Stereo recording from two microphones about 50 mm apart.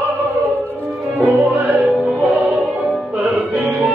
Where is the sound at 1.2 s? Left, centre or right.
Right.